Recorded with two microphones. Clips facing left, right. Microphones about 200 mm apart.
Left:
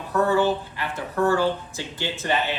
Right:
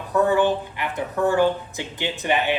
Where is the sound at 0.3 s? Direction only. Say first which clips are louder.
Right 1 dB; 15° right (ahead or behind).